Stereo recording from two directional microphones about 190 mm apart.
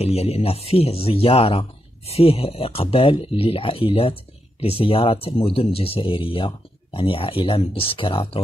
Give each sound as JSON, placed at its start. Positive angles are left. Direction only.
{"t": 0.0, "sound": "speech", "side_deg": 35}